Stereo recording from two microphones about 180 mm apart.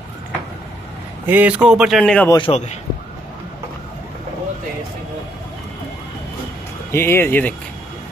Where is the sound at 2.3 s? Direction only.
30° left (ahead or behind).